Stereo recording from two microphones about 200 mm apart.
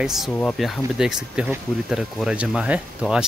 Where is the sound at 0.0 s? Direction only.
Centre (ahead or behind).